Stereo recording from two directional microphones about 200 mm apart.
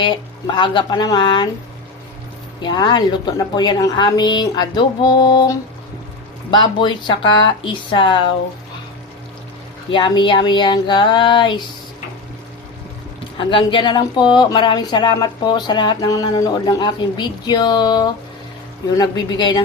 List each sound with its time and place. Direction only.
0.0 s speech: 25° left (ahead or behind)
2.6 s speech: 20° left (ahead or behind)
9.9 s speech: 25° left (ahead or behind)
13.4 s speech: 25° left (ahead or behind)